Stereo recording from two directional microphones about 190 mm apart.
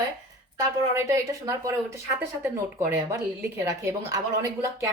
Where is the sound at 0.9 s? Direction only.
15° right (ahead or behind).